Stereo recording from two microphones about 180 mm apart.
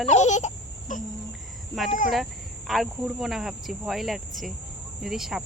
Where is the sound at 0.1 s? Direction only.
40° left (ahead or behind).